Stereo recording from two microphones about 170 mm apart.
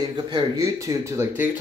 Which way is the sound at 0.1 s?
25° right (ahead or behind).